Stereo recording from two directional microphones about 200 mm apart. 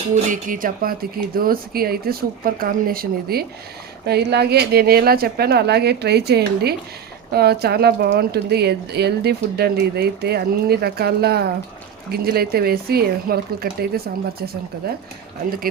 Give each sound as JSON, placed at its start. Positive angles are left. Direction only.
{"t": 0.3, "sound": "speech", "side_deg": -40}